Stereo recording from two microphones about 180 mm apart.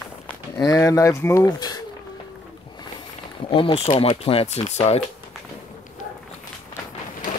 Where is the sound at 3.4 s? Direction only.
30° left (ahead or behind).